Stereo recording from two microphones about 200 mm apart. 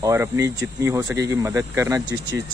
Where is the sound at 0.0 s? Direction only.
15° right (ahead or behind).